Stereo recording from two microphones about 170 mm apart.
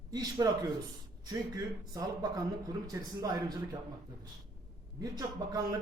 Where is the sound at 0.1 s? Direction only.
25° right (ahead or behind).